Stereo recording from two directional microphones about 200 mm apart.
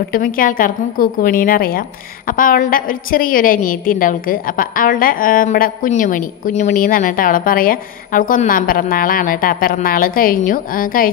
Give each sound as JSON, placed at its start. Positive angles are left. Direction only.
{"t": 0.1, "sound": "a woman's voice", "side_deg": 45}